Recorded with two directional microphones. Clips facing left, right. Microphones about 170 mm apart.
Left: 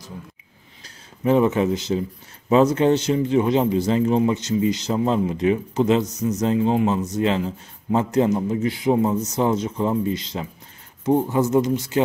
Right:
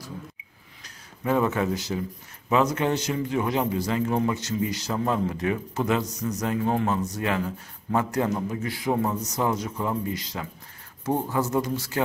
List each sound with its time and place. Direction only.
0.8 s speech: 20° left (ahead or behind)